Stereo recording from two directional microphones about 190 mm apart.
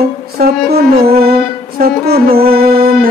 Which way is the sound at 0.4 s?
55° right (ahead or behind).